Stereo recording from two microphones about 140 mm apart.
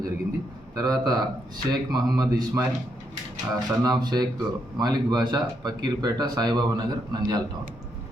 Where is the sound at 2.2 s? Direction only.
25° right (ahead or behind).